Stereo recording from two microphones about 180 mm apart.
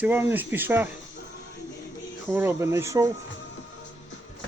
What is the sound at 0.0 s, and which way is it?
Speech, 10° right (ahead or behind).